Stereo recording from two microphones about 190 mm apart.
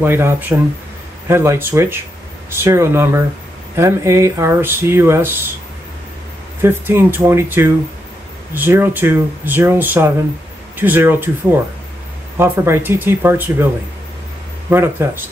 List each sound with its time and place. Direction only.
0.0 s speech: 10° right (ahead or behind)
6.6 s speech: 10° right (ahead or behind)
12.4 s speech: 10° right (ahead or behind)
14.7 s speech: 10° right (ahead or behind)